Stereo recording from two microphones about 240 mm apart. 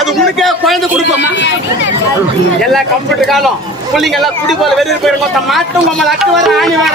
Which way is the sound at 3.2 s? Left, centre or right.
Centre.